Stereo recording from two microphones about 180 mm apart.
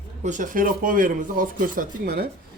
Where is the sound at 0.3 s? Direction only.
45° right (ahead or behind).